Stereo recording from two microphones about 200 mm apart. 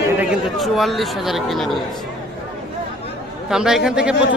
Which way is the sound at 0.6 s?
Centre (ahead or behind).